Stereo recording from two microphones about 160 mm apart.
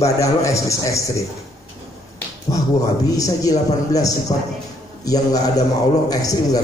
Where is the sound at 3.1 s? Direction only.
20° left (ahead or behind).